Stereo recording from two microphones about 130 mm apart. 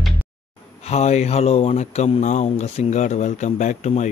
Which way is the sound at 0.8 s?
55° left (ahead or behind).